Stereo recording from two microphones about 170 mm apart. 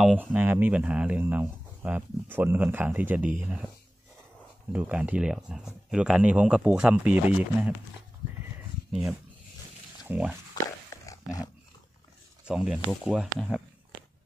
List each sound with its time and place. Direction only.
0.0 s speech: 5° right (ahead or behind)
4.7 s speech: 10° right (ahead or behind)
10.0 s speech: 10° right (ahead or behind)
10.5 s a sound: 20° left (ahead or behind)
12.4 s speech: 5° right (ahead or behind)